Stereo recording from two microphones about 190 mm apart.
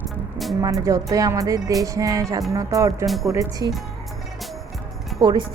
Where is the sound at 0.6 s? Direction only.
15° right (ahead or behind).